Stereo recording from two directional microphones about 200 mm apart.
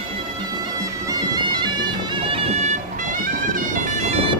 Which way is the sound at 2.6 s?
40° right (ahead or behind).